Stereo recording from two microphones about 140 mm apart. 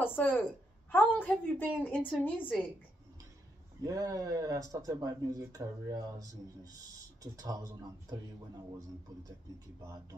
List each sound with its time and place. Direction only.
0.0 s a woman's voice: 15° left (ahead or behind)
3.8 s speech: 25° right (ahead or behind)